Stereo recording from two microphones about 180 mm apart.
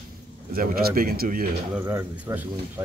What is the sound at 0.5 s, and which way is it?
Speech, 55° right (ahead or behind).